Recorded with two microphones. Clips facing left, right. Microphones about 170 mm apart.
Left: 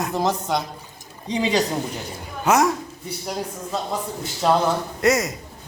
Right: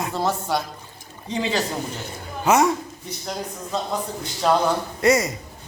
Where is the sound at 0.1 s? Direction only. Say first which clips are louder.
Even; 15° left (ahead or behind).